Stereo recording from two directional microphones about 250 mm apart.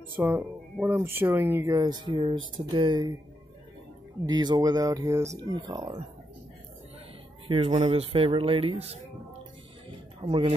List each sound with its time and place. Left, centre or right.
0.2 s speech: centre
4.3 s speech: centre
7.4 s speech: right
10.2 s speech: right